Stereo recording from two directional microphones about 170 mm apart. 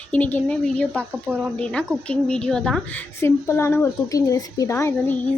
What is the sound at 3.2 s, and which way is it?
A woman's voice, 15° left (ahead or behind).